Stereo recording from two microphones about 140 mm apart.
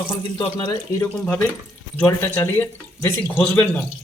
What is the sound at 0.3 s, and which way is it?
Speech, 30° left (ahead or behind).